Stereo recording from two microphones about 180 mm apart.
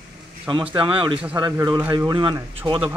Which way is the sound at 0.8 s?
30° right (ahead or behind).